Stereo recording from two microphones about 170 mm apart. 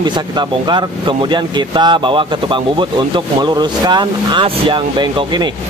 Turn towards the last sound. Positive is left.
turn(degrees=-30)  # may be behind; listen again after turning